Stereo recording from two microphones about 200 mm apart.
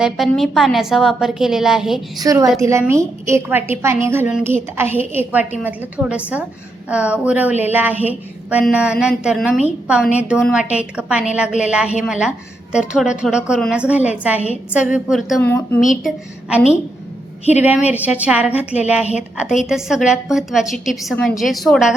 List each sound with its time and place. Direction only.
0.0 s speech: centre (ahead or behind)
2.1 s a woman's voice: 15° right (ahead or behind)
15.4 s speech: 10° left (ahead or behind)
17.5 s a woman's voice: 10° right (ahead or behind)